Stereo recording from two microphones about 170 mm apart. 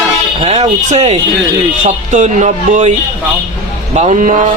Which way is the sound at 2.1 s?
45° right (ahead or behind).